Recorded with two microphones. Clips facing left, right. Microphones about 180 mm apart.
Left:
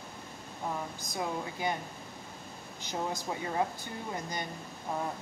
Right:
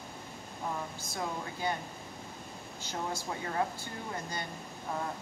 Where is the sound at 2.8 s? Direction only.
15° left (ahead or behind).